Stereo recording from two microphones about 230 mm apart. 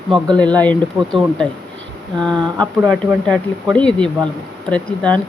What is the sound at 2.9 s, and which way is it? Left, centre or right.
Speech, centre.